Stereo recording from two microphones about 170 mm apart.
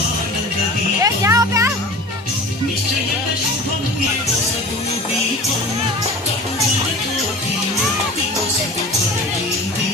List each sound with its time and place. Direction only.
1.0 s music: 20° right (ahead or behind)